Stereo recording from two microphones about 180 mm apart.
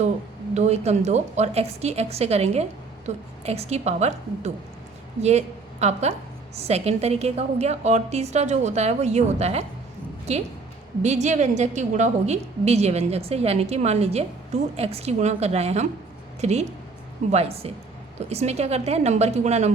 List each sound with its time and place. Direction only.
0.5 s a woman's voice: 40° right (ahead or behind)